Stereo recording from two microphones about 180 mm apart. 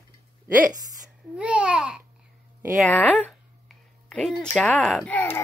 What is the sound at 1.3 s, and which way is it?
Speech, 5° right (ahead or behind).